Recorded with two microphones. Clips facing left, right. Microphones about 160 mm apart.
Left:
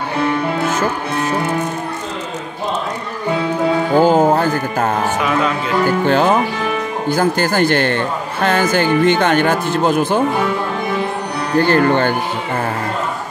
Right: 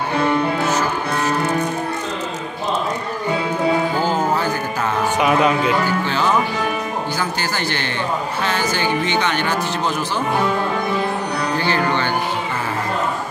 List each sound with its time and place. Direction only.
4.0 s music: 50° left (ahead or behind)
5.9 s a man's voice: 50° left (ahead or behind)
11.5 s a man's voice: 50° left (ahead or behind)